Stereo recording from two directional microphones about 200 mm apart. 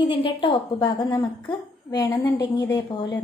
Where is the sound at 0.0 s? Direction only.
25° left (ahead or behind).